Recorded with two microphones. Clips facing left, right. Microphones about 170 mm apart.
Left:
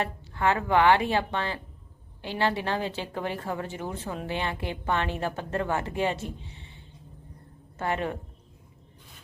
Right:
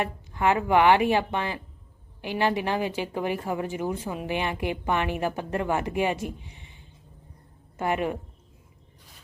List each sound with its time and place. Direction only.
0.0 s a woman's voice: 15° right (ahead or behind)